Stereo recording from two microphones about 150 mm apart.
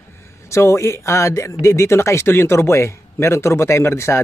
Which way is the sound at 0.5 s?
20° left (ahead or behind).